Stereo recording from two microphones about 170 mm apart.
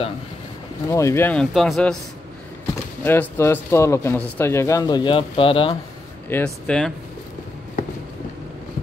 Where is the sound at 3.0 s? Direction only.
10° left (ahead or behind); by 5.7 s 30° left (ahead or behind).